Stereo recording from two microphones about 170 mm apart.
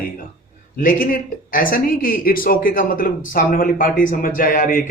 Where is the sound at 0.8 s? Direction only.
55° left (ahead or behind).